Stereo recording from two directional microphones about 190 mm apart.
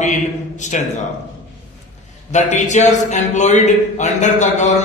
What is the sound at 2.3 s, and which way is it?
A man's voice, 40° left (ahead or behind).